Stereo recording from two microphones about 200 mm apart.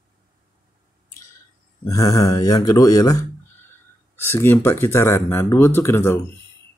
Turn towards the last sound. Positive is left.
turn(degrees=15)  # may be behind; listen again after turning